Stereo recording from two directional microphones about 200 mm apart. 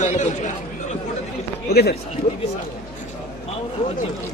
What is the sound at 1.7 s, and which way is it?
Speech, 50° left (ahead or behind).